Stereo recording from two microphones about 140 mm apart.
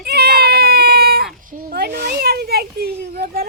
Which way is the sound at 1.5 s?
90° right.